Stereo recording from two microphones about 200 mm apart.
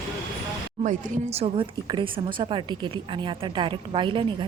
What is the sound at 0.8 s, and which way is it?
A woman's voice, 35° right (ahead or behind).